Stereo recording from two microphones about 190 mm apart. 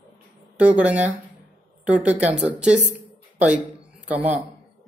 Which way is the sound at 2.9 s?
5° right (ahead or behind).